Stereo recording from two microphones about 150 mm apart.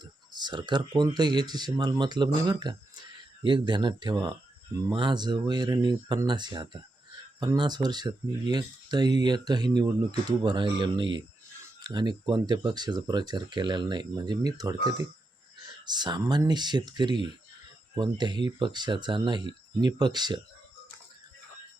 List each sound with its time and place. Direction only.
0.0 s speech: 30° right (ahead or behind)
15.6 s a sound: 30° right (ahead or behind)
16.5 s speech: 30° right (ahead or behind)